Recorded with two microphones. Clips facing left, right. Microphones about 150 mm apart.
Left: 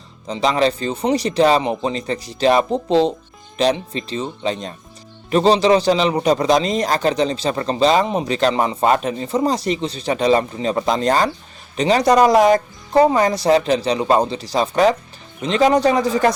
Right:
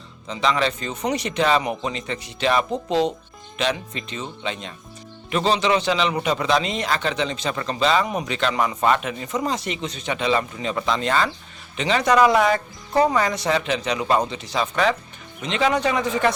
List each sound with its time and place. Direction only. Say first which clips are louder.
0.3 s a man's voice: left 5 dB; 35° left (ahead or behind)